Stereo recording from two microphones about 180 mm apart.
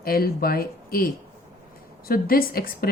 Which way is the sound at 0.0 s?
55° left (ahead or behind).